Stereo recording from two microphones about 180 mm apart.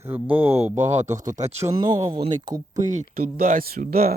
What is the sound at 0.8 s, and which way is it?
Speech, 40° right (ahead or behind).